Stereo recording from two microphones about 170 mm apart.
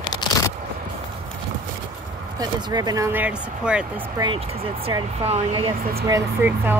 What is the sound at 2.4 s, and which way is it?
Speech, 25° right (ahead or behind).